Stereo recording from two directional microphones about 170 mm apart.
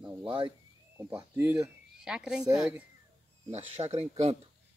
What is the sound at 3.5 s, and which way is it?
Speech, 40° right (ahead or behind).